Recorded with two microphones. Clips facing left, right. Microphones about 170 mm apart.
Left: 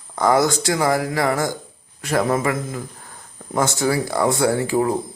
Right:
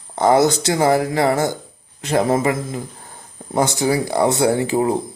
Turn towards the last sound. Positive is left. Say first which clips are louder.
# right 2 dB
turn(degrees=-20)  # may be behind; listen again after turning